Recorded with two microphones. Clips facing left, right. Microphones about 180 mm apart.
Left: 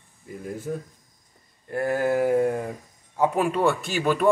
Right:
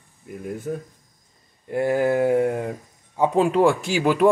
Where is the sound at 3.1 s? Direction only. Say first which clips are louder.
Right 4 dB; 20° right (ahead or behind).